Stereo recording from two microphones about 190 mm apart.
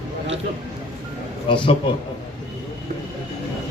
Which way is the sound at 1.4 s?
25° left (ahead or behind).